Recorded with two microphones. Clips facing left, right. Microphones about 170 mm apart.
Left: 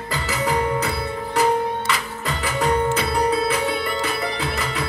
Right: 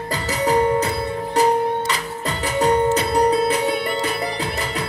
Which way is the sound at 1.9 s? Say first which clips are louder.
Right 1 dB; 35° right (ahead or behind).